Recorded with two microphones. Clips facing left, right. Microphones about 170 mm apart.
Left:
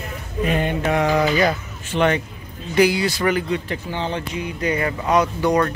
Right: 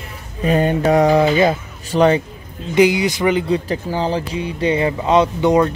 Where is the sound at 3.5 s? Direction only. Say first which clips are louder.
Right 5 dB; 35° right (ahead or behind).